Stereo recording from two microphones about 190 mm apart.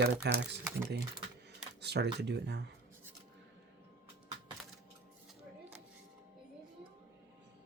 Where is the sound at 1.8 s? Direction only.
60° right (ahead or behind).